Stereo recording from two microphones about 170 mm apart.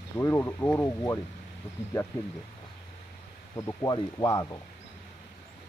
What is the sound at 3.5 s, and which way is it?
Speech, 20° left (ahead or behind).